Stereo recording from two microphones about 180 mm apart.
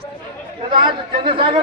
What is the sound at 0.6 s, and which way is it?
Speech, 30° right (ahead or behind).